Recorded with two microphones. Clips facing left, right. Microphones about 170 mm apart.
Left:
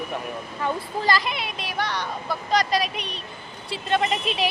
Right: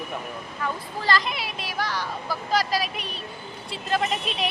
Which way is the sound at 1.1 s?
10° left (ahead or behind).